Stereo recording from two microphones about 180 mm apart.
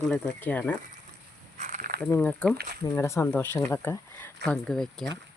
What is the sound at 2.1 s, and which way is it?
Speech, 10° left (ahead or behind).